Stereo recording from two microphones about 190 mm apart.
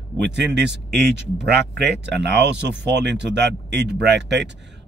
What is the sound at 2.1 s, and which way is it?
Speech, 65° right (ahead or behind).